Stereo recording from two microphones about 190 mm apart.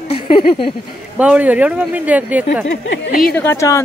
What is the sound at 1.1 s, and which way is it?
Speech, 10° right (ahead or behind).